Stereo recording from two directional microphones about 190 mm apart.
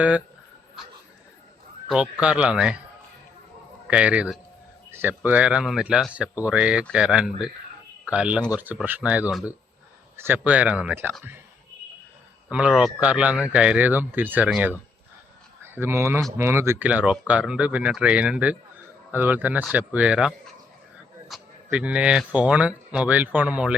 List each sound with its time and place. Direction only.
1.9 s speech: 5° right (ahead or behind)
3.8 s speech: 5° right (ahead or behind)
12.5 s speech: 5° right (ahead or behind)